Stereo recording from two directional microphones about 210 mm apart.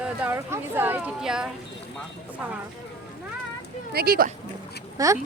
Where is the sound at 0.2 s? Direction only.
10° right (ahead or behind).